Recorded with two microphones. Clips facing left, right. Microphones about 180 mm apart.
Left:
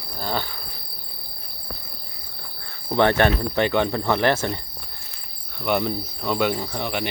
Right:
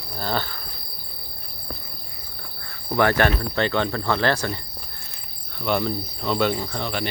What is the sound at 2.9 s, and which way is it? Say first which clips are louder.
Speech: left 1 dB; 25° left (ahead or behind).